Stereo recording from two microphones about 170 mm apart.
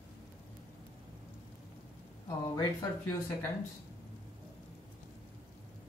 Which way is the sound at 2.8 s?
20° left (ahead or behind).